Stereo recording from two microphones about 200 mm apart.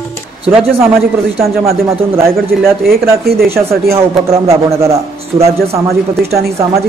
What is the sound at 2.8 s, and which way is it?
Speech, 50° right (ahead or behind).